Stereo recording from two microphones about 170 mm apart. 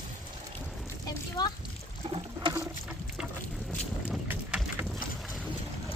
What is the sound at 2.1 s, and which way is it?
Water, 30° right (ahead or behind).